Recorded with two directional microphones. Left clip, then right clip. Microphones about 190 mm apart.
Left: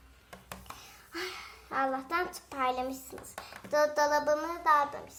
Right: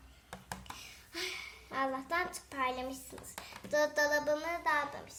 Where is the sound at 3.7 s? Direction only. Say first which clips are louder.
Left 4 dB; centre (ahead or behind).